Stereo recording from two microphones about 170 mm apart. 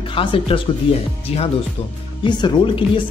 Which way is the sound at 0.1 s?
30° left (ahead or behind).